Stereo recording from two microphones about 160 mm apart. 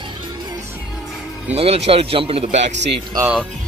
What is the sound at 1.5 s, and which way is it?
A man's voice, 40° right (ahead or behind).